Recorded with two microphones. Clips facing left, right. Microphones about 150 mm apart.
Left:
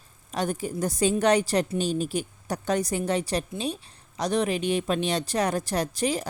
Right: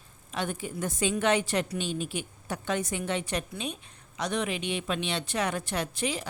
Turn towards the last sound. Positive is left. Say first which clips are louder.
# left 5 dB
turn(degrees=40)  # may be behind; listen again after turning